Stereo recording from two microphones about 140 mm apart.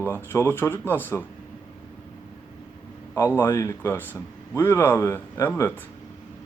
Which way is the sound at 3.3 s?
20° left (ahead or behind).